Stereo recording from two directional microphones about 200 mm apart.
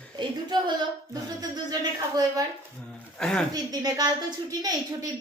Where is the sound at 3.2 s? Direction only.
5° left (ahead or behind).